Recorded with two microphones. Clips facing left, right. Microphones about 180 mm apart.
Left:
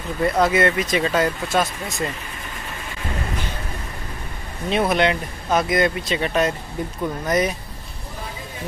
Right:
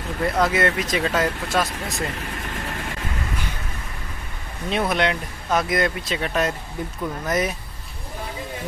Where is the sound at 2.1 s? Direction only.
90° right.